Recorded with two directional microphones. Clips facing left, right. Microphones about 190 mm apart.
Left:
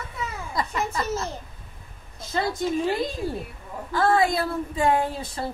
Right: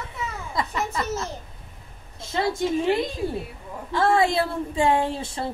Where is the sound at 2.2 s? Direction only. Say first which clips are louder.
Right 1 dB; 25° right (ahead or behind).